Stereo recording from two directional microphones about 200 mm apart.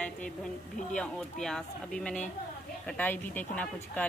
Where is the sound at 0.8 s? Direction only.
40° left (ahead or behind).